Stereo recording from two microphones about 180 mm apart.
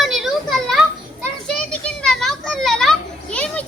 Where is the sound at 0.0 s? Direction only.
Centre (ahead or behind).